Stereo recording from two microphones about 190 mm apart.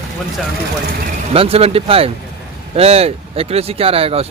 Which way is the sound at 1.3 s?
30° right (ahead or behind).